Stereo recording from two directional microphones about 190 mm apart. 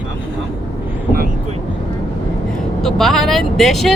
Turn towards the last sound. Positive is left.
turn(degrees=0)  # may be behind; listen again after turning